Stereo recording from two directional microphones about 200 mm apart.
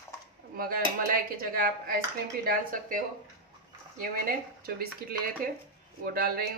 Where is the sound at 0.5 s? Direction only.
45° right (ahead or behind).